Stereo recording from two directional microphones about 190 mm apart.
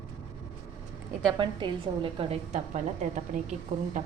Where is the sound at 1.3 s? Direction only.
25° right (ahead or behind); by 3.5 s 40° right (ahead or behind).